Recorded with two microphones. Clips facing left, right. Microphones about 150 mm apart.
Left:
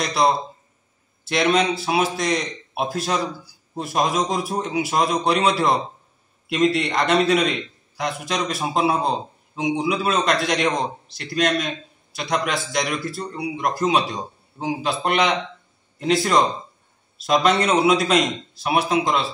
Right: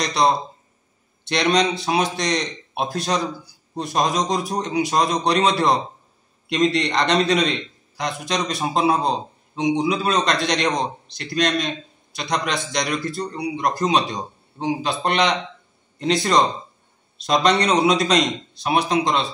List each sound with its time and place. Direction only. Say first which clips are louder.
0.0 s a man's voice: even; 5° left (ahead or behind)